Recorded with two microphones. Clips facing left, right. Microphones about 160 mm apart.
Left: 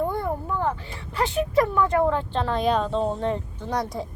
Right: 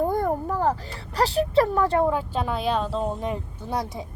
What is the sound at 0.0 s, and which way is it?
Speech, 40° right (ahead or behind).